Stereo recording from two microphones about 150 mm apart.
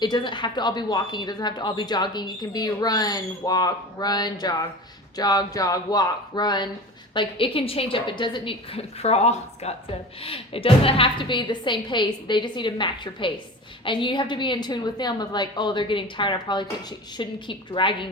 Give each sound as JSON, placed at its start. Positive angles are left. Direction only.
{"t": 0.0, "sound": "a woman's voice", "side_deg": 30}